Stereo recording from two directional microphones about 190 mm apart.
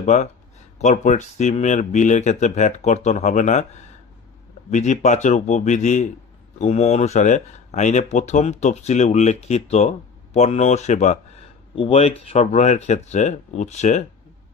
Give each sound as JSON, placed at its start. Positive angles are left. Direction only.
{"t": 0.0, "sound": "speech", "side_deg": 40}
{"t": 4.6, "sound": "speech", "side_deg": 40}